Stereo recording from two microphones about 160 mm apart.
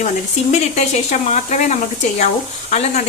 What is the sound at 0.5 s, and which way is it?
A woman's voice, 45° left (ahead or behind).